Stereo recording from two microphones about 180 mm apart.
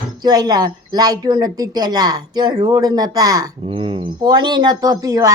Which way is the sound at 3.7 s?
30° right (ahead or behind).